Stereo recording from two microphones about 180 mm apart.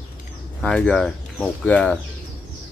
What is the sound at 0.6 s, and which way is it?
Speech, 5° left (ahead or behind).